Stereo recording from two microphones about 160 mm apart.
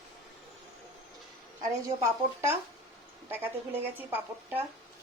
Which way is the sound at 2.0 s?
15° right (ahead or behind).